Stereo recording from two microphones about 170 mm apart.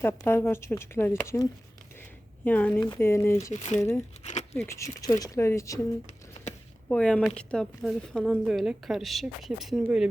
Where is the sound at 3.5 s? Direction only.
45° left (ahead or behind).